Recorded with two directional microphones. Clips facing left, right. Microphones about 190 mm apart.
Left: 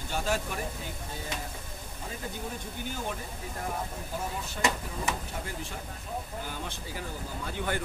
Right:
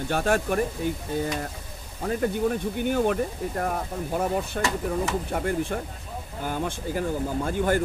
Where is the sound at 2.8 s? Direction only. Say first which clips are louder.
Right 13 dB; 65° right (ahead or behind).